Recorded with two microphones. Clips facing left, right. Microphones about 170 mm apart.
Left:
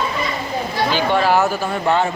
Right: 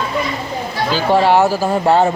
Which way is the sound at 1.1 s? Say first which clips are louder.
Right 6 dB; 30° right (ahead or behind).